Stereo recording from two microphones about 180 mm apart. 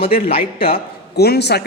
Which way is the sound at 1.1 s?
65° left (ahead or behind).